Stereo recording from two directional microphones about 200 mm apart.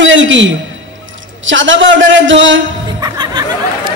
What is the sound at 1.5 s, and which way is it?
A man's voice, 65° right (ahead or behind).